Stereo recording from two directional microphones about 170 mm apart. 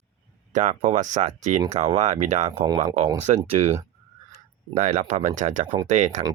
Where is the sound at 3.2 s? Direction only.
40° right (ahead or behind).